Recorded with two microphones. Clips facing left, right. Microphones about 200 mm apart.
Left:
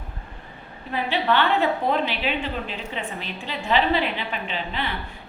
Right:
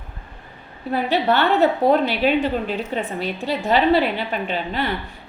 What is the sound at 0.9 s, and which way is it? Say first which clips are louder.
A woman's voice: right 4 dB; 40° right (ahead or behind).